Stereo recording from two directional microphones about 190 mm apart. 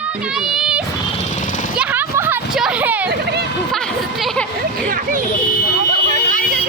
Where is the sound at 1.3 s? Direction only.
40° left (ahead or behind).